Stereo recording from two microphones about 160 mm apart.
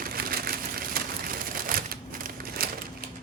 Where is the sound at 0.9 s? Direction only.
65° right (ahead or behind).